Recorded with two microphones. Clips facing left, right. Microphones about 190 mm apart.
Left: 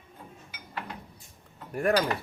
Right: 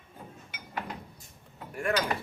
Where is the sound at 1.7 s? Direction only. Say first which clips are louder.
Left 5 dB; 40° left (ahead or behind).